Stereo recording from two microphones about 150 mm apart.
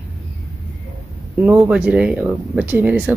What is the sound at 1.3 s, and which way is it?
Speech, 10° right (ahead or behind).